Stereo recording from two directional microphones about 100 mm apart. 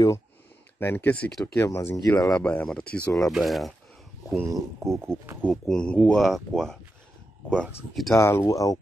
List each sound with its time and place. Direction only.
0.7 s speech: 20° left (ahead or behind)
1.4 s speech: 25° left (ahead or behind)
2.0 s speech: 35° left (ahead or behind)
2.3 s speech: 10° left (ahead or behind)
3.3 s speech: centre (ahead or behind)
4.4 s speech: 30° right (ahead or behind)
5.5 s speech: 5° left (ahead or behind)
6.2 s speech: centre (ahead or behind)
7.4 s speech: 10° left (ahead or behind)
7.9 s speech: centre (ahead or behind)
8.2 s speech: 30° left (ahead or behind)